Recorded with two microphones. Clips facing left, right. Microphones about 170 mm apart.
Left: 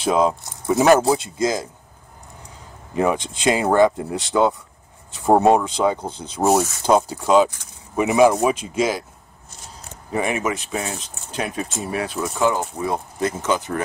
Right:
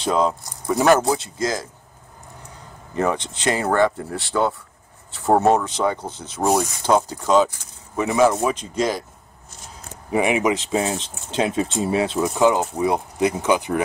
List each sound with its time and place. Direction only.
0.0 s speech: 10° left (ahead or behind)
2.9 s speech: 10° left (ahead or behind)
10.1 s speech: 15° right (ahead or behind)